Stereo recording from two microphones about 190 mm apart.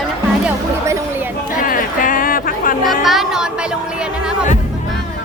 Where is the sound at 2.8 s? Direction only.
Centre (ahead or behind).